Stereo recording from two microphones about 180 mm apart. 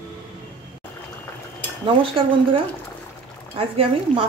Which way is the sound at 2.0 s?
30° right (ahead or behind).